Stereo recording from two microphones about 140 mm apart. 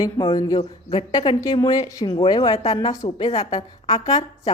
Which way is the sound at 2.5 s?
50° left (ahead or behind).